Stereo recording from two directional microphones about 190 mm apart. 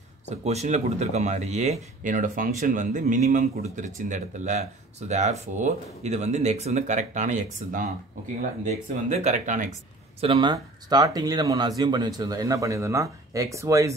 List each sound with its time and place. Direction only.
0.3 s speech: 35° right (ahead or behind)
10.2 s speech: 25° right (ahead or behind)